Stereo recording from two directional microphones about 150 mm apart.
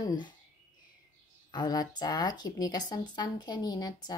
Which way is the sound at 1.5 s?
30° left (ahead or behind).